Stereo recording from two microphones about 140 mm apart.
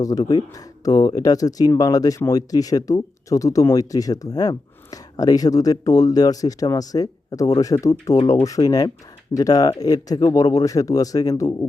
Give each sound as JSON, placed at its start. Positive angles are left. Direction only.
{"t": 0.0, "sound": "speech", "side_deg": 25}